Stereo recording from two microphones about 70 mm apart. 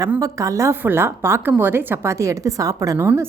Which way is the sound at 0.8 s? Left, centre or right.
Right.